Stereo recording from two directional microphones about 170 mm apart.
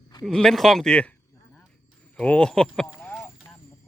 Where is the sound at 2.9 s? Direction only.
10° left (ahead or behind).